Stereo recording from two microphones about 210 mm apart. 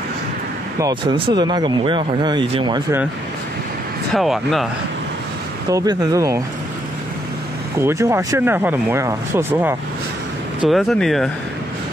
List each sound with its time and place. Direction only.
0.7 s speech: 20° right (ahead or behind)
4.1 s speech: centre (ahead or behind)
5.7 s speech: 15° right (ahead or behind)
7.8 s speech: 15° right (ahead or behind)
10.7 s speech: centre (ahead or behind)